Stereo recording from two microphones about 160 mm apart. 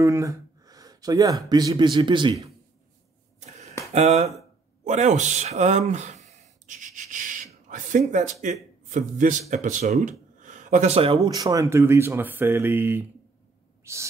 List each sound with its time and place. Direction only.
0.0 s speech: 20° right (ahead or behind)
3.9 s a man's voice: 45° right (ahead or behind)
11.2 s speech: 20° right (ahead or behind)
13.9 s owl: 15° right (ahead or behind)